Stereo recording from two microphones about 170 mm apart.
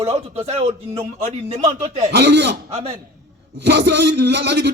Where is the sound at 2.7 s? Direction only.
35° right (ahead or behind).